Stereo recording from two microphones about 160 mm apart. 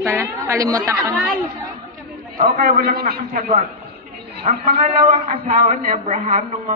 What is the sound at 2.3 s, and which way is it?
A man's voice, 65° right (ahead or behind).